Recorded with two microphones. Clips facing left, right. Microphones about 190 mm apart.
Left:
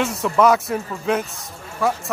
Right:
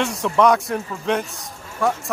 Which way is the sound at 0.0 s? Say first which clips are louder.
Even; 5° left (ahead or behind).